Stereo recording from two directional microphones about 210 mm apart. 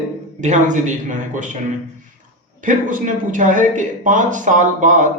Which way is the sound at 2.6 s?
40° right (ahead or behind).